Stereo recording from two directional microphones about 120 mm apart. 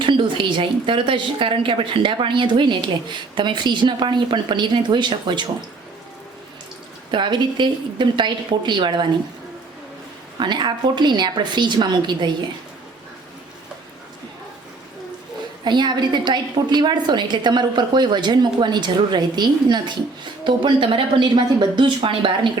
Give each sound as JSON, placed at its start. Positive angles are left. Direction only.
{"t": 0.0, "sound": "a woman's voice", "side_deg": -40}
{"t": 7.1, "sound": "a woman's voice", "side_deg": -40}
{"t": 10.4, "sound": "a woman's voice", "side_deg": -40}
{"t": 15.6, "sound": "a woman's voice", "side_deg": -40}